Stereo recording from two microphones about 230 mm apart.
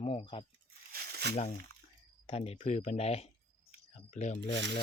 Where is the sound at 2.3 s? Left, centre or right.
Left.